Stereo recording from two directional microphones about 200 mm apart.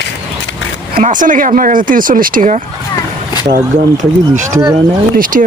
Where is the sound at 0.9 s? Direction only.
40° right (ahead or behind).